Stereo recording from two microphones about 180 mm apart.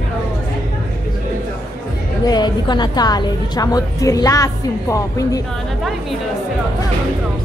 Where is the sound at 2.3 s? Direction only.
25° left (ahead or behind).